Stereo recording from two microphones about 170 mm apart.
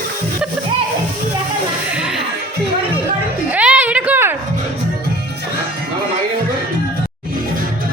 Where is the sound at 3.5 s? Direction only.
10° right (ahead or behind).